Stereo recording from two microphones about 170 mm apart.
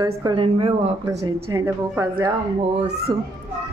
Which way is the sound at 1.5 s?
20° right (ahead or behind).